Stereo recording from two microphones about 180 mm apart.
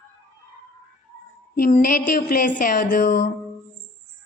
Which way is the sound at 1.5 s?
50° left (ahead or behind).